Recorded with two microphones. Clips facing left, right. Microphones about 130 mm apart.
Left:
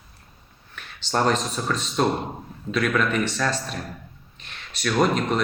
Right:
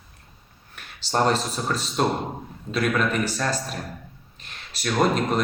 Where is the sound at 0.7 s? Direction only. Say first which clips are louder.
Right 1 dB; 35° right (ahead or behind).